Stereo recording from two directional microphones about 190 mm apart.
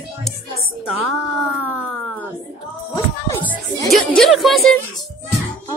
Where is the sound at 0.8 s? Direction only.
Centre (ahead or behind).